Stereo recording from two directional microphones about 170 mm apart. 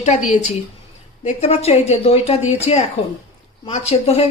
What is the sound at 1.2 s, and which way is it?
Speech, 40° left (ahead or behind).